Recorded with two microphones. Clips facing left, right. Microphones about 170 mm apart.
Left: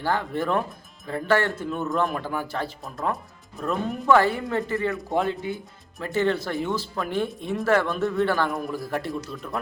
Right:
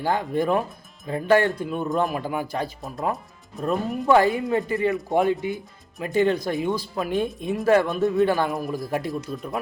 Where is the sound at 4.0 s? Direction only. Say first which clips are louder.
Right 1 dB; 15° right (ahead or behind).